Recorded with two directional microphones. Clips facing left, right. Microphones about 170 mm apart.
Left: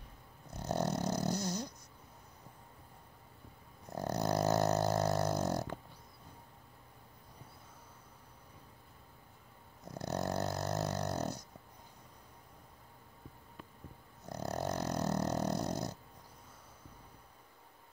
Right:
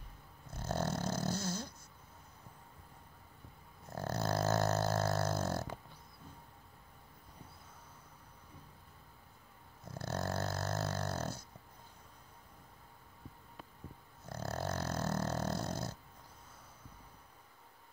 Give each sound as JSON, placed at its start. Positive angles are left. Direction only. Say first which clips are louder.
{"t": 0.5, "sound": "dog", "louder": "left 2 dB", "side_deg": 15}
{"t": 3.9, "sound": "a sound", "louder": "left 2 dB", "side_deg": 15}
{"t": 9.8, "sound": "dog", "louder": "left 2 dB", "side_deg": 15}
{"t": 14.2, "sound": "dog", "louder": "left 2 dB", "side_deg": 15}